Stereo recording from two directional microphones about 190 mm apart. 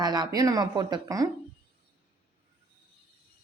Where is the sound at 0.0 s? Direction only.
20° right (ahead or behind).